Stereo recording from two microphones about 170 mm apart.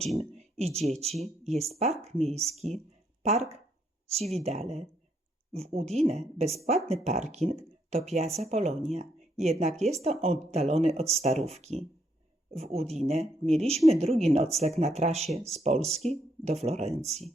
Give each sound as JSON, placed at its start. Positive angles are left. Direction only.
{"t": 0.2, "sound": "speech", "side_deg": -40}
{"t": 4.1, "sound": "speech", "side_deg": -40}